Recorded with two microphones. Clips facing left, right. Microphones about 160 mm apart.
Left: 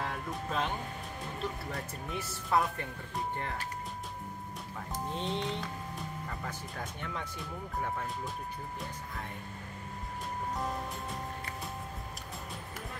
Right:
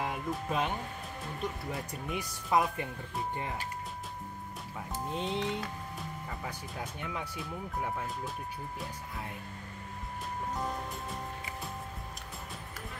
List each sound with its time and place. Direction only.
0.3 s speech: 10° right (ahead or behind)
5.1 s music: 5° right (ahead or behind)
6.4 s speech: 5° right (ahead or behind)
10.5 s music: centre (ahead or behind)